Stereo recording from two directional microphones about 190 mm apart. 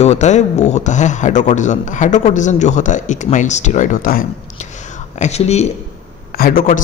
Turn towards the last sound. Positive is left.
turn(degrees=50)  # may be behind; listen again after turning